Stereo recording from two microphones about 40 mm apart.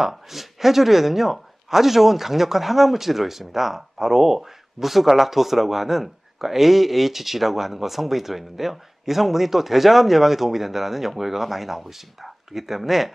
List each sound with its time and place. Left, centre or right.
0.0 s speech: centre